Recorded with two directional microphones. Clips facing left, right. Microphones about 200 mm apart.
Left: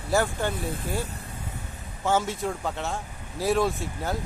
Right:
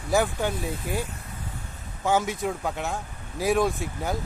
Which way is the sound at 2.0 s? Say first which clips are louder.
Right 1 dB; 15° right (ahead or behind).